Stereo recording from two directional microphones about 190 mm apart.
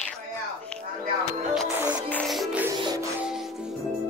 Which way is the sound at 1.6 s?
10° right (ahead or behind).